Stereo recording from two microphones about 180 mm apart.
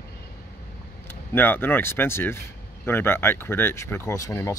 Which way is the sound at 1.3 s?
10° left (ahead or behind).